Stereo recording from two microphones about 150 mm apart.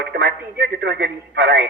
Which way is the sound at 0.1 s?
90° right.